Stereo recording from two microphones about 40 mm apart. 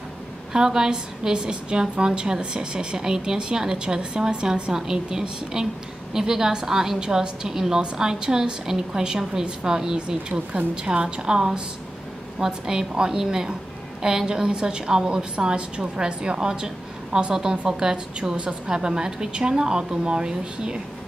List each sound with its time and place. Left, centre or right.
0.5 s a woman's voice: centre
9.9 s a woman's voice: right